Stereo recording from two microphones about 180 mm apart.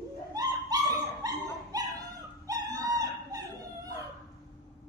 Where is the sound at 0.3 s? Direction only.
20° right (ahead or behind).